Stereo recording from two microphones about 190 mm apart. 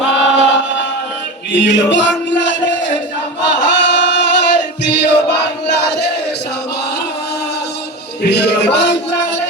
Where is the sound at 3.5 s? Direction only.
65° left (ahead or behind).